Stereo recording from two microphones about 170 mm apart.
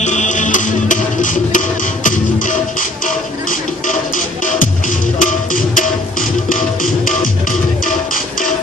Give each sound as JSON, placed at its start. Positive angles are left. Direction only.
{"t": 0.0, "sound": "music", "side_deg": 45}
{"t": 4.6, "sound": "music", "side_deg": 50}